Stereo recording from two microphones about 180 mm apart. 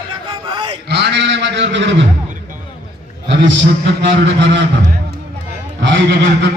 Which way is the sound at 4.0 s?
70° right (ahead or behind).